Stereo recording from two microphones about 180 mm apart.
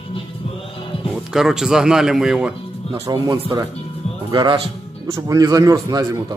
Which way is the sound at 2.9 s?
25° right (ahead or behind).